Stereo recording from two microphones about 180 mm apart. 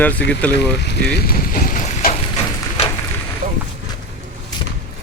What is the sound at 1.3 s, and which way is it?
Vehicle, 50° left (ahead or behind).